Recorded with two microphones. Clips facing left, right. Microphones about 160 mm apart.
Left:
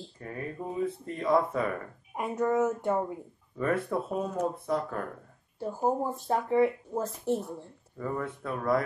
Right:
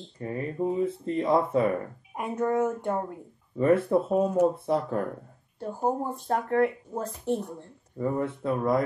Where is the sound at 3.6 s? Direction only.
25° right (ahead or behind).